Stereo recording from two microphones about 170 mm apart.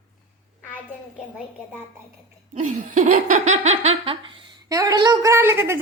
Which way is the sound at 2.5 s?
45° right (ahead or behind).